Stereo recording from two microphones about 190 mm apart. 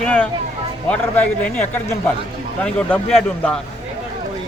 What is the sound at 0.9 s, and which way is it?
A man's voice, 5° left (ahead or behind).